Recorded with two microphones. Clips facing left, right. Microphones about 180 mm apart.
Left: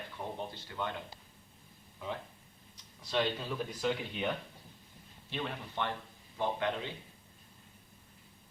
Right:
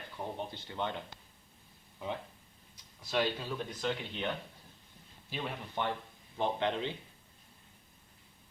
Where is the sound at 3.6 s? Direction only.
5° left (ahead or behind).